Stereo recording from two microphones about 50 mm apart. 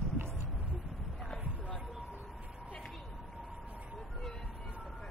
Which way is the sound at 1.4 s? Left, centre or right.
Right.